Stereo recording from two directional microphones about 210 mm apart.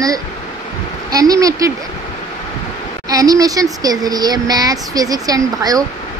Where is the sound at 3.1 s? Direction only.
15° right (ahead or behind).